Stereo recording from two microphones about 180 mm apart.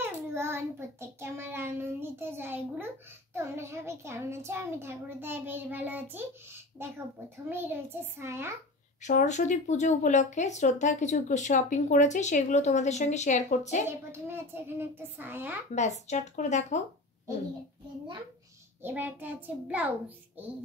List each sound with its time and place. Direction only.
0.0 s child singing: 15° right (ahead or behind)
3.3 s a child's voice: 15° right (ahead or behind)
9.0 s speech: 40° left (ahead or behind)
13.8 s a child's voice: 10° right (ahead or behind)
15.7 s speech: 40° left (ahead or behind)
18.8 s a child's voice: 10° right (ahead or behind)